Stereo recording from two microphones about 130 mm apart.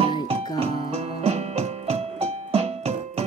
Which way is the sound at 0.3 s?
50° right (ahead or behind).